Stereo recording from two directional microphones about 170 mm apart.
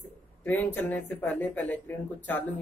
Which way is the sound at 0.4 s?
10° left (ahead or behind).